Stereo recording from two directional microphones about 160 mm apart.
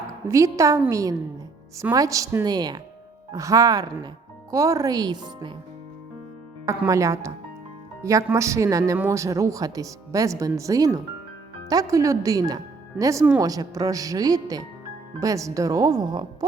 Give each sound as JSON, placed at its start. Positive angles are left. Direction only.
{"t": 0.3, "sound": "speech", "side_deg": -20}
{"t": 6.7, "sound": "speech", "side_deg": -20}